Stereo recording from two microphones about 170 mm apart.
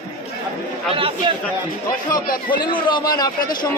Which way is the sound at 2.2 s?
60° left (ahead or behind).